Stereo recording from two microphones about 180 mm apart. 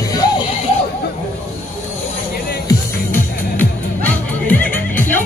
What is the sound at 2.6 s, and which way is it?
Music, 10° left (ahead or behind).